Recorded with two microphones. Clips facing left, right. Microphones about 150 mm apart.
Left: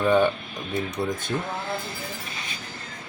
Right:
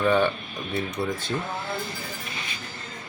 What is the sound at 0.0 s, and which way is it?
Speech, 10° left (ahead or behind).